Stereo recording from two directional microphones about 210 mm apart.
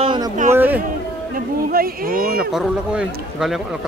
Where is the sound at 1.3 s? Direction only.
45° right (ahead or behind).